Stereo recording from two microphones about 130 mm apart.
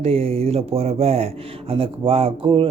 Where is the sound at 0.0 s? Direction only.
50° right (ahead or behind).